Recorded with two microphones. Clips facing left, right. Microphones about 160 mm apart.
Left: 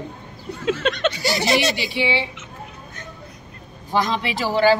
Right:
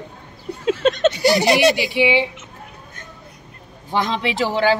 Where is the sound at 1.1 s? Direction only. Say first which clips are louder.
Right 7 dB; 55° right (ahead or behind).